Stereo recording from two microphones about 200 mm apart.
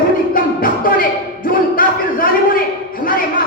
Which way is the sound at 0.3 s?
45° left (ahead or behind).